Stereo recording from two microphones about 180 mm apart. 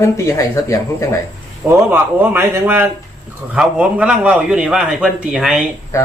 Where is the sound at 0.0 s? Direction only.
15° left (ahead or behind).